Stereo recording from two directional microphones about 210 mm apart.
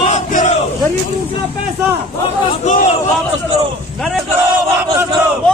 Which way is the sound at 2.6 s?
35° left (ahead or behind).